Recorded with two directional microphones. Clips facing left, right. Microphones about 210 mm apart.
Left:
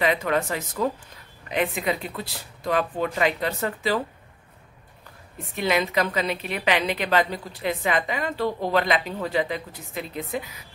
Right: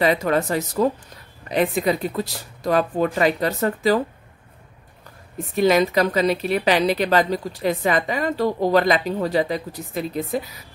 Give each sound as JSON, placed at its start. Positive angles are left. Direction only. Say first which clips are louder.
{"t": 0.0, "sound": "a woman's voice", "louder": "right 4 dB", "side_deg": -40}
{"t": 5.5, "sound": "a woman's voice", "louder": "right 7 dB", "side_deg": -40}